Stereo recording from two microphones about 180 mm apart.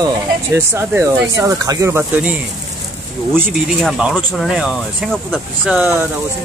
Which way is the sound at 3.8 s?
Centre (ahead or behind).